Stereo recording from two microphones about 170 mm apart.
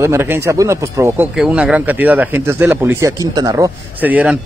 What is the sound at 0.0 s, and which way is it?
Speech, 15° right (ahead or behind).